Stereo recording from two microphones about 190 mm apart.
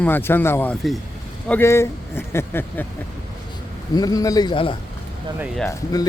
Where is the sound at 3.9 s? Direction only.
20° left (ahead or behind).